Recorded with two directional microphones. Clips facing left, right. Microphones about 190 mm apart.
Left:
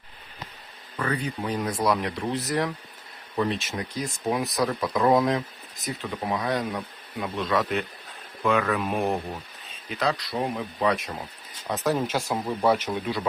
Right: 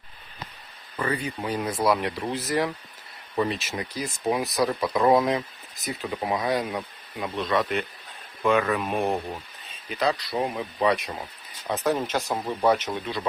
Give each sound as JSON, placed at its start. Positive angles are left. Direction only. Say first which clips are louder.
{"t": 0.9, "sound": "speech", "louder": "even", "side_deg": -5}